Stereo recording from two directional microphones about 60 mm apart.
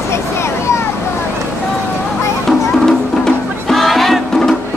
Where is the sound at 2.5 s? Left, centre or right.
Centre.